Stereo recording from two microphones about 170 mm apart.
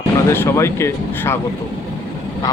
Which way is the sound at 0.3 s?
15° left (ahead or behind).